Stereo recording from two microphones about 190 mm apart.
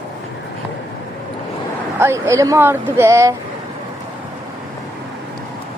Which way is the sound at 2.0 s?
15° right (ahead or behind).